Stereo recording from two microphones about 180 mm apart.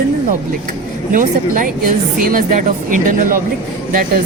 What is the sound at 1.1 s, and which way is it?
Speech, 45° right (ahead or behind).